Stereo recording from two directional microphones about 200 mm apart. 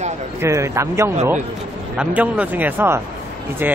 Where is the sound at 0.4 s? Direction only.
15° right (ahead or behind).